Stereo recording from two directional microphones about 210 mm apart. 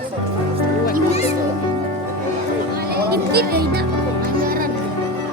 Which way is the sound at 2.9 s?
50° right (ahead or behind).